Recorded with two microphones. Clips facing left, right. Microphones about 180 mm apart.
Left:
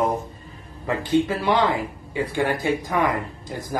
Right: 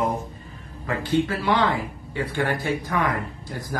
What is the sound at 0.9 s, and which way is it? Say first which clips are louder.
Speech: left 2 dB; 20° left (ahead or behind).